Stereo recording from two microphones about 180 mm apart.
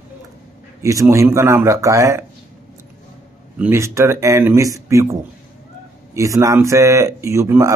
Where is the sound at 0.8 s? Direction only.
15° right (ahead or behind).